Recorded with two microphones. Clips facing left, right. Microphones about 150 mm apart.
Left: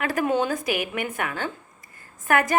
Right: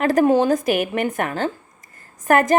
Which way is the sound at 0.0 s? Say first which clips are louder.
Right 8 dB; 40° right (ahead or behind).